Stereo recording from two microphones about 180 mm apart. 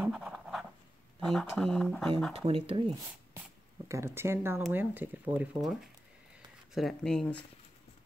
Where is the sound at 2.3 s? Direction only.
35° right (ahead or behind).